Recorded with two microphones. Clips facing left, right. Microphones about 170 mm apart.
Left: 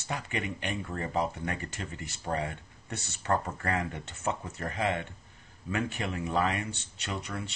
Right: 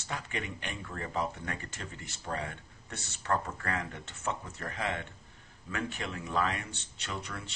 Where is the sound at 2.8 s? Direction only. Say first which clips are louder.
Left 3 dB; 15° left (ahead or behind).